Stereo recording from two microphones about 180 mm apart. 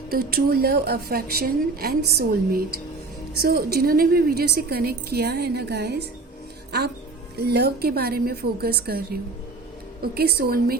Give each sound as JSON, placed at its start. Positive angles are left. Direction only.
{"t": 0.1, "sound": "a woman's voice", "side_deg": -55}